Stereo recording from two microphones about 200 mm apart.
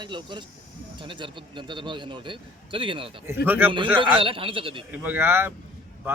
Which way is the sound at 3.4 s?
10° right (ahead or behind).